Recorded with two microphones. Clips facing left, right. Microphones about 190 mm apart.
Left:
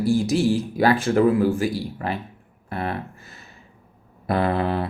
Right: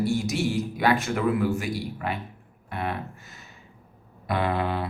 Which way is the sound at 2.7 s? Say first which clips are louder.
Left 3 dB; 35° left (ahead or behind).